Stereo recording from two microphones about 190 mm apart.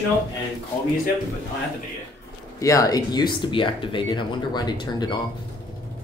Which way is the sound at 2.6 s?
15° left (ahead or behind).